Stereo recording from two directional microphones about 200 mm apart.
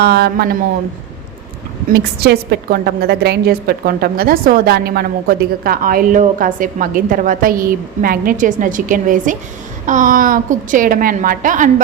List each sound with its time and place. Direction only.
0.0 s a woman's voice: 50° right (ahead or behind)
1.9 s a woman's voice: 50° right (ahead or behind)